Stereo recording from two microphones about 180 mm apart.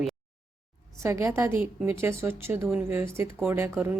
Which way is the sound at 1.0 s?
15° right (ahead or behind).